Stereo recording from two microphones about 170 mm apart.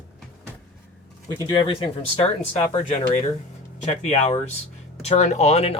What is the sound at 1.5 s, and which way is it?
Speech, 30° left (ahead or behind).